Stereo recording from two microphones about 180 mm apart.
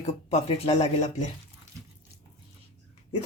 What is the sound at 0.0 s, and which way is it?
Speech, 35° left (ahead or behind).